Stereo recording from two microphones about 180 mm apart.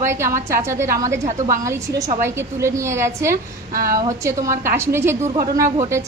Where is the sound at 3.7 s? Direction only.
50° right (ahead or behind).